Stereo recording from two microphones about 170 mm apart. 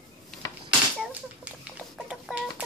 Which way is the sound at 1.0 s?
5° right (ahead or behind).